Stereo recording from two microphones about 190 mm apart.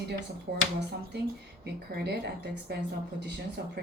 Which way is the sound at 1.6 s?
60° right (ahead or behind).